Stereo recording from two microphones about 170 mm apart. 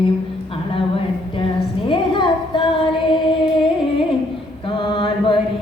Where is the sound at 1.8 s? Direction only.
30° left (ahead or behind).